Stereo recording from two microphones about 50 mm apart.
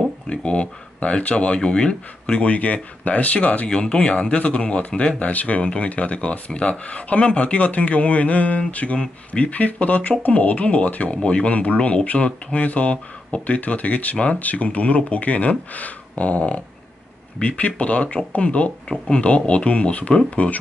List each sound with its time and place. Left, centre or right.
0.3 s speech: left
2.4 s speech: left